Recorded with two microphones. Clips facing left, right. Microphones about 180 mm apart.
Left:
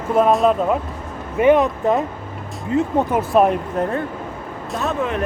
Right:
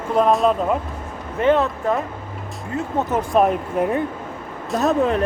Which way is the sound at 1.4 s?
15° left (ahead or behind).